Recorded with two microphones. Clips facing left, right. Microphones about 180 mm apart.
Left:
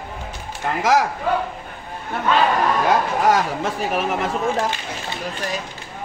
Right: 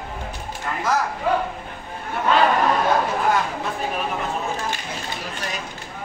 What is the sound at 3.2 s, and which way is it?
Speech, 90° left.